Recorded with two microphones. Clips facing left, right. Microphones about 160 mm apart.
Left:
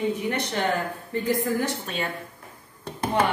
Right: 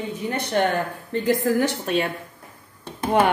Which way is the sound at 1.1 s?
80° right.